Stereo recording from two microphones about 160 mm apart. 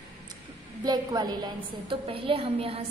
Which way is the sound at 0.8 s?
25° right (ahead or behind).